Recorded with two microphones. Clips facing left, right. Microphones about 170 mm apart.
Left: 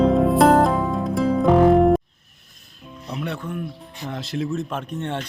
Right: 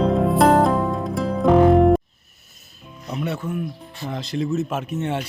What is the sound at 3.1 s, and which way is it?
Music, centre (ahead or behind).